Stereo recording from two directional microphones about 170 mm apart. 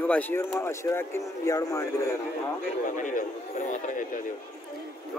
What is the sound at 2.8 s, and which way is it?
Speech, 50° left (ahead or behind).